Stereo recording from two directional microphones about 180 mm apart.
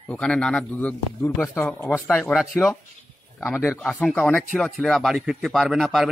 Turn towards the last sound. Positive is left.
turn(degrees=0)  # may be behind; listen again after turning